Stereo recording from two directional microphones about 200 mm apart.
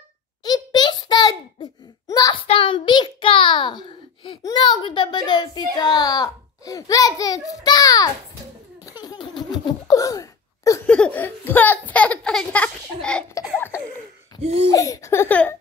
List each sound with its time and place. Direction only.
0.4 s a sound: 20° left (ahead or behind)
2.4 s a child's voice: 25° left (ahead or behind)
8.8 s laughter: 20° left (ahead or behind)
11.0 s speech: 10° left (ahead or behind)
14.4 s laughter: 30° right (ahead or behind)
14.7 s speech: 15° left (ahead or behind)